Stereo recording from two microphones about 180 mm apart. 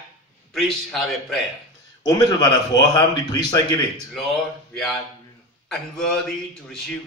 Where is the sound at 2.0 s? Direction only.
20° left (ahead or behind).